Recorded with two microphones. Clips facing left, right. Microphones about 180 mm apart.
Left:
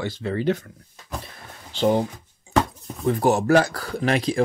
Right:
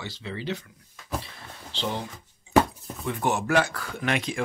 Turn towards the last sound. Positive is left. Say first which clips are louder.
# left 7 dB
turn(degrees=35)  # may be behind; listen again after turning